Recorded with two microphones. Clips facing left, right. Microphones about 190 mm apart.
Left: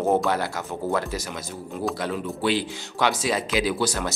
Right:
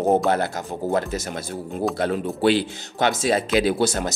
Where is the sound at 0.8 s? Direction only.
15° right (ahead or behind).